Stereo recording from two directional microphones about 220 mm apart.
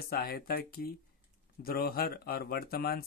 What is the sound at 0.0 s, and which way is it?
Speech, 45° left (ahead or behind).